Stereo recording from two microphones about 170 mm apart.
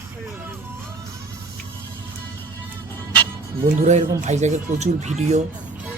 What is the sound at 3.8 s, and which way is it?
Speech, 45° right (ahead or behind).